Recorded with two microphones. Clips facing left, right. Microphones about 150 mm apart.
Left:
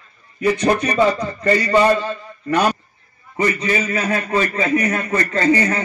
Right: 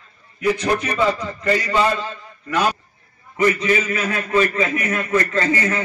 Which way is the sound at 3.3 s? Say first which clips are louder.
Right 2 dB; 40° left (ahead or behind).